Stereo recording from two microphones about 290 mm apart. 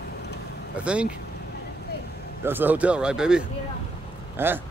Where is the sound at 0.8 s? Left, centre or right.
Centre.